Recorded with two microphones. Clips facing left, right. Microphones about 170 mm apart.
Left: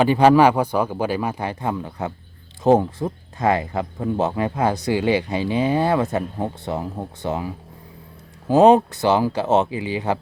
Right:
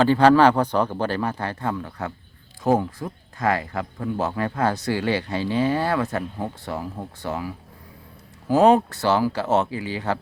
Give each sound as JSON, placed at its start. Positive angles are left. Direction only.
{"t": 0.0, "sound": "speech", "side_deg": 15}